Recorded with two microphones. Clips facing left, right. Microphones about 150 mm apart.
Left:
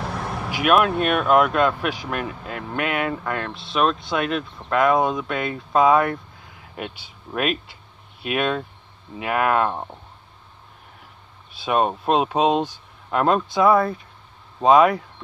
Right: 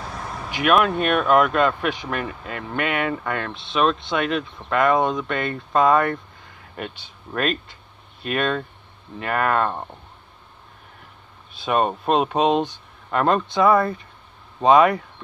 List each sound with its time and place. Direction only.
0.0 s vehicle: 70° left (ahead or behind)
0.5 s speech: 5° left (ahead or behind)
11.6 s speech: 5° left (ahead or behind)